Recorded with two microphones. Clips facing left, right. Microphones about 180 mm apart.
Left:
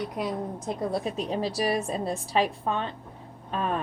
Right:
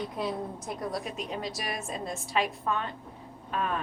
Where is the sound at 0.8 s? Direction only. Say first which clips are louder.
Left 6 dB; 25° left (ahead or behind).